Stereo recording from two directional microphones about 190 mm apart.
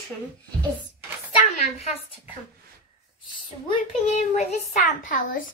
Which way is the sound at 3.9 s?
35° left (ahead or behind).